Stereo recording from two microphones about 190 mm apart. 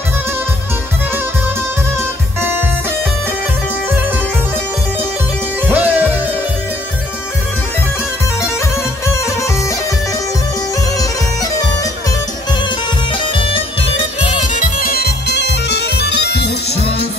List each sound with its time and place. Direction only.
5.7 s music: 10° right (ahead or behind)
13.2 s bagpipes: 25° left (ahead or behind)
14.2 s music: 35° left (ahead or behind); by 16.5 s 60° left (ahead or behind)